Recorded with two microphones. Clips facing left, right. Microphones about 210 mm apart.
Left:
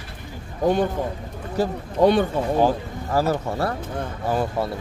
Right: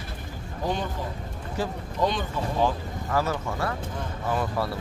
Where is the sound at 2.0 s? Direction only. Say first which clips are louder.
Left 9 dB; 65° left (ahead or behind).